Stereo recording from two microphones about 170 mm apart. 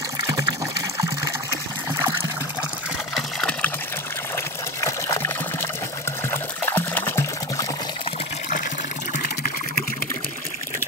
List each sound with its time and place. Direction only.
0.3 s water: 20° right (ahead or behind)
3.2 s water: 5° left (ahead or behind)
4.7 s water: 15° left (ahead or behind)